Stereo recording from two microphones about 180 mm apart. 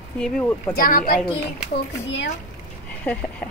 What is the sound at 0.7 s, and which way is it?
Speech, 50° left (ahead or behind).